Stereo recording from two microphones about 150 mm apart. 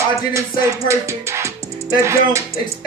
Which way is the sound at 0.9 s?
20° right (ahead or behind).